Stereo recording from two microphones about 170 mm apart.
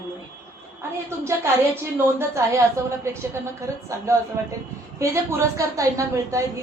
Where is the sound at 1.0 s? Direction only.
15° right (ahead or behind).